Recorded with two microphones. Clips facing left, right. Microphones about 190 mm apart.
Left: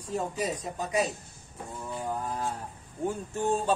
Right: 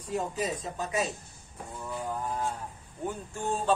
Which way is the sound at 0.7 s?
15° left (ahead or behind).